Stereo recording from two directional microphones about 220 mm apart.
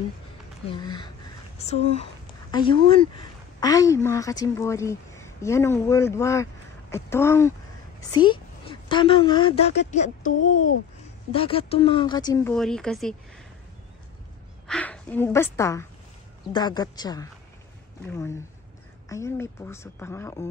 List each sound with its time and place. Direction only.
0.7 s a woman's voice: 20° left (ahead or behind)
9.8 s speech: 35° left (ahead or behind)
11.3 s speech: 25° left (ahead or behind)
12.5 s speech: centre (ahead or behind)
14.7 s a woman's voice: 5° left (ahead or behind)